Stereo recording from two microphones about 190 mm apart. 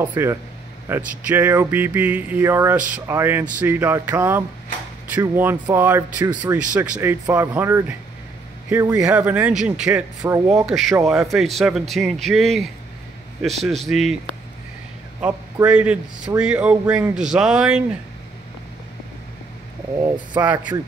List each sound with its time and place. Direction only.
0.0 s speech: 10° right (ahead or behind)
6.2 s speech: 20° right (ahead or behind)
6.7 s speech: 10° right (ahead or behind)
15.1 s a man's voice: 5° right (ahead or behind)
20.4 s speech: 15° right (ahead or behind)